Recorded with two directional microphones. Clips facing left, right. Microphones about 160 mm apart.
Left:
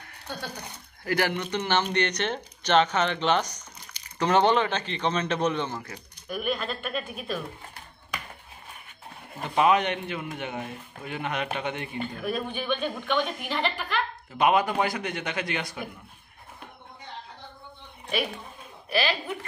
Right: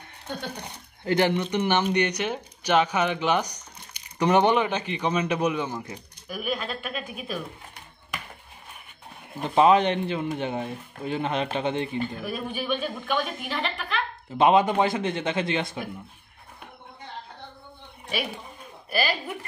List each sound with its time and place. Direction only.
0.3 s speech: 25° right (ahead or behind)
6.2 s a woman's voice: 5° right (ahead or behind)
9.4 s speech: 30° right (ahead or behind)
12.2 s a woman's voice: 5° right (ahead or behind)
14.4 s speech: 25° right (ahead or behind)